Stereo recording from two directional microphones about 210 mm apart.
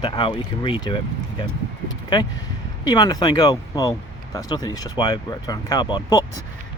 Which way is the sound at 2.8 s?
20° left (ahead or behind).